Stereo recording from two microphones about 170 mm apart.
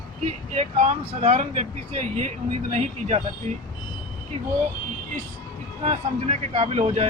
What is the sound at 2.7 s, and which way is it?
Speech, 45° right (ahead or behind).